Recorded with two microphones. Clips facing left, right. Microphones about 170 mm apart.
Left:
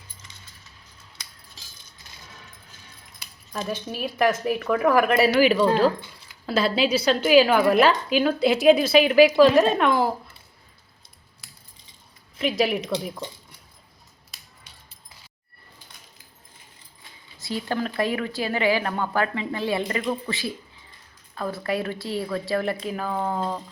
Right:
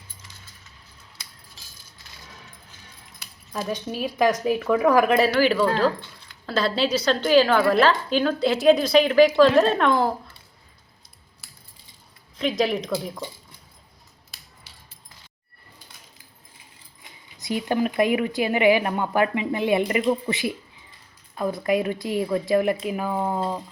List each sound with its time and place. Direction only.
3.7 s a woman's voice: 5° left (ahead or behind)
12.4 s a woman's voice: 5° left (ahead or behind)
17.0 s speech: 20° right (ahead or behind)